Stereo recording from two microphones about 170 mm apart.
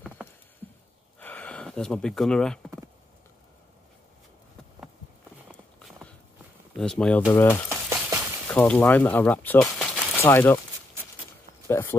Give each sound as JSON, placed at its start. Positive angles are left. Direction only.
{"t": 0.2, "sound": "a sound", "side_deg": -5}
{"t": 1.2, "sound": "a sound", "side_deg": 10}
{"t": 5.5, "sound": "clip-clop", "side_deg": 5}
{"t": 6.7, "sound": "speech", "side_deg": 5}
{"t": 7.2, "sound": "speech", "side_deg": 20}
{"t": 7.7, "sound": "frying", "side_deg": -15}
{"t": 8.5, "sound": "speech", "side_deg": 5}
{"t": 11.6, "sound": "speech", "side_deg": 15}